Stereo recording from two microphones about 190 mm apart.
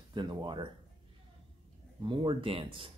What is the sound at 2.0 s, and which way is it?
Speech, 25° right (ahead or behind).